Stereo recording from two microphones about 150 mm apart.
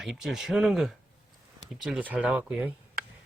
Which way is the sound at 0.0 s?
Centre (ahead or behind).